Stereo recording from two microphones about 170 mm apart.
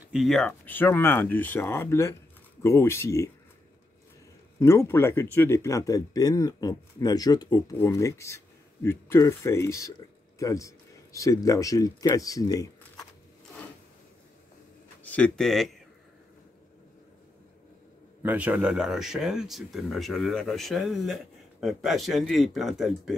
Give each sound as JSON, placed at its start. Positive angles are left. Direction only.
{"t": 0.0, "sound": "speech", "side_deg": 0}
{"t": 4.6, "sound": "speech", "side_deg": 15}
{"t": 15.0, "sound": "speech", "side_deg": 5}
{"t": 18.2, "sound": "speech", "side_deg": -10}